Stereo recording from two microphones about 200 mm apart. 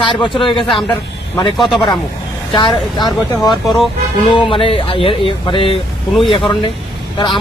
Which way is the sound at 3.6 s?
Centre (ahead or behind).